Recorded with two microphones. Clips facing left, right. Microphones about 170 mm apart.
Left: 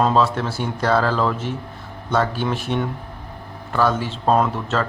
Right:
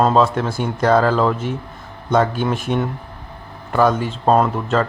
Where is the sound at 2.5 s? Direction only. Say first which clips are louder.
Right 3 dB; 45° right (ahead or behind).